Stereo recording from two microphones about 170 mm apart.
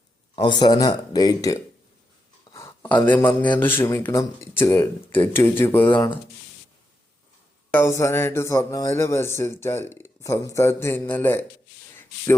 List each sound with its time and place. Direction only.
0.3 s speech: 25° left (ahead or behind)
7.7 s speech: 15° left (ahead or behind)